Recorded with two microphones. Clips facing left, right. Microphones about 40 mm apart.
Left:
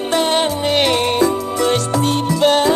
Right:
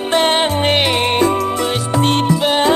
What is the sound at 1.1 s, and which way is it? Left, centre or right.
Music, right.